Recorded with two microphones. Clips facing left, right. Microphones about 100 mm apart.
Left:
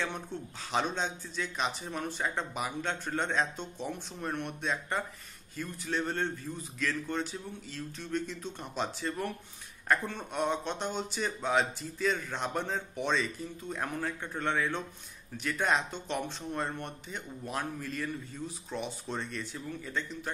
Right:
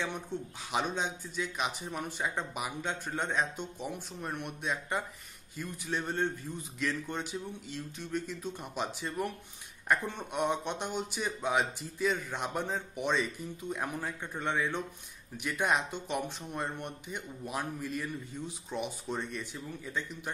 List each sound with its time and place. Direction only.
0.3 s speech: 15° right (ahead or behind)